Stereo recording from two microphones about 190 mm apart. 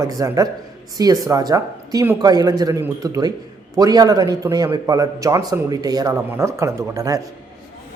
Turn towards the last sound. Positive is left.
turn(degrees=-15)  # may be behind; listen again after turning